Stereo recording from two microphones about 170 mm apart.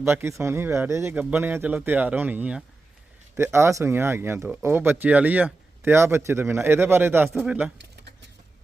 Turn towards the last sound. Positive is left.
turn(degrees=-5)  # may be behind; listen again after turning